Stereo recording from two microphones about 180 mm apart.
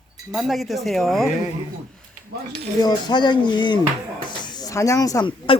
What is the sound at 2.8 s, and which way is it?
Speech, 25° left (ahead or behind).